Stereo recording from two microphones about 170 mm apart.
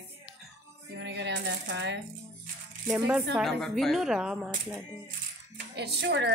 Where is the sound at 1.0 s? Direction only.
90° right.